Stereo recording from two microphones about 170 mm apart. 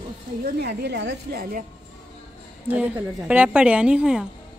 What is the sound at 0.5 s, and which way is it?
A woman's voice, 65° right (ahead or behind).